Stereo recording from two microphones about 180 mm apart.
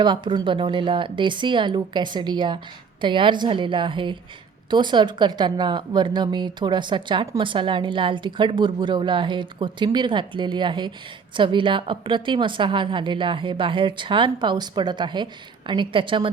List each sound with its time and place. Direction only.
0.0 s speech: 25° right (ahead or behind)